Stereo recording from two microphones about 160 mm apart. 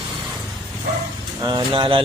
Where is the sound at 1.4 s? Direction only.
25° right (ahead or behind).